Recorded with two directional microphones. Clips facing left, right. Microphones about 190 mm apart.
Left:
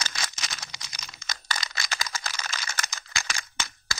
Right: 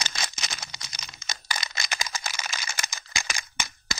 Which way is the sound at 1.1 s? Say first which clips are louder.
Even; 20° right (ahead or behind).